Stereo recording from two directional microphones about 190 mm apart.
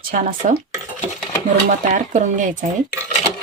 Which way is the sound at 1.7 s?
45° right (ahead or behind).